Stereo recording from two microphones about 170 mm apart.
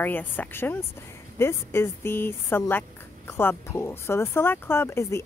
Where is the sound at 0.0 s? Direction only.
10° left (ahead or behind).